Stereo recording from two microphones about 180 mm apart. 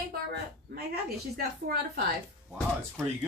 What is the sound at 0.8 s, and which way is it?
A woman's voice, 60° right (ahead or behind).